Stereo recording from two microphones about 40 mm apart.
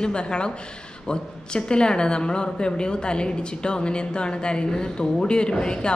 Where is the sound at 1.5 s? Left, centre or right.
Left.